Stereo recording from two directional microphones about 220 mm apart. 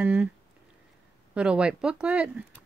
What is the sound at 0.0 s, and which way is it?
Speech, 5° right (ahead or behind).